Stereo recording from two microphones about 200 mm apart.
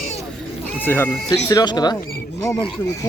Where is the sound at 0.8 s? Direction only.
10° left (ahead or behind).